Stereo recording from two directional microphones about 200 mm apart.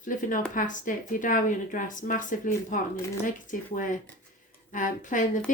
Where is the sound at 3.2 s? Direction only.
40° left (ahead or behind).